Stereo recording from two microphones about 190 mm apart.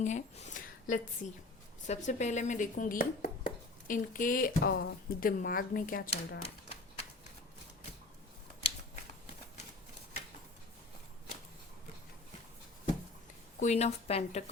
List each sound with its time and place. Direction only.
0.0 s speech: 40° left (ahead or behind); by 6.4 s 55° left (ahead or behind)
13.6 s a woman's voice: 35° left (ahead or behind)